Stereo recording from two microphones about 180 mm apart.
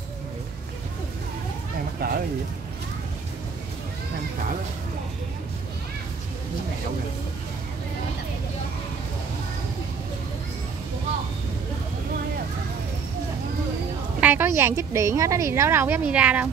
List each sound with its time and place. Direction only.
2.0 s speech: 55° right (ahead or behind)
14.2 s a woman's voice: 10° right (ahead or behind)